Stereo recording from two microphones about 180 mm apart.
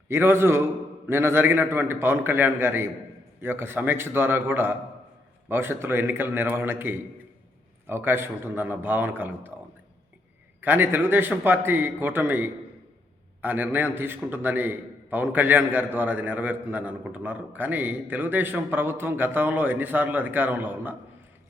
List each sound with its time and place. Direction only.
0.1 s a man's voice: 15° right (ahead or behind)
10.6 s a man's voice: 10° right (ahead or behind)